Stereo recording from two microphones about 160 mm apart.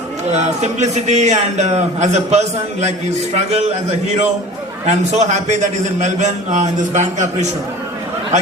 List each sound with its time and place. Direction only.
0.3 s a man's voice: 45° right (ahead or behind)